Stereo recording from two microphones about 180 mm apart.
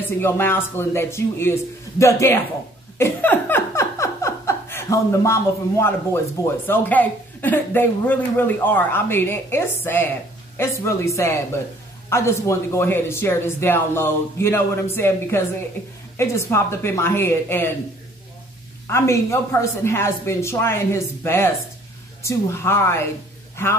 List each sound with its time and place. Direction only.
0.2 s speech: 10° left (ahead or behind)
18.9 s a man's voice: 15° left (ahead or behind)